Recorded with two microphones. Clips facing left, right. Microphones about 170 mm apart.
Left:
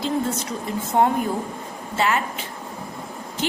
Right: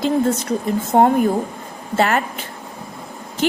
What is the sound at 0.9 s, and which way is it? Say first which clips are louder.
Speech: right 5 dB; 40° right (ahead or behind).